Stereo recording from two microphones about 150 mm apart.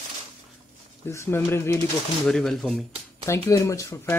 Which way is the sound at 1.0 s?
15° left (ahead or behind).